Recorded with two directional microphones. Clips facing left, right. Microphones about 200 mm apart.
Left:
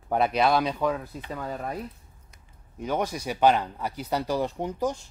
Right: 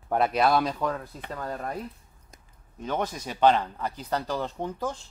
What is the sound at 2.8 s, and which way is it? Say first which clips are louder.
Speech: left 2 dB; 10° left (ahead or behind).